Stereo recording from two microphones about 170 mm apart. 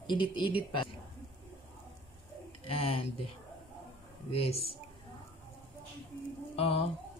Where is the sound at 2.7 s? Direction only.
35° left (ahead or behind).